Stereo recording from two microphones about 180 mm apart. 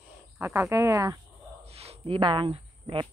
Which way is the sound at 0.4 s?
15° right (ahead or behind).